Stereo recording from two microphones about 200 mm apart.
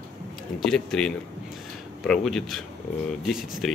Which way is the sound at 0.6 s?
5° left (ahead or behind).